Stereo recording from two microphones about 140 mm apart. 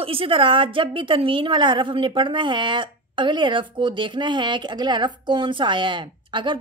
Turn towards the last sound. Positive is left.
turn(degrees=-35)  # may be behind; listen again after turning